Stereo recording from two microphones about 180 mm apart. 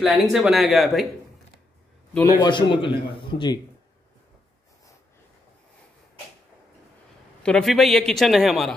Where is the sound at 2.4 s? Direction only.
25° left (ahead or behind).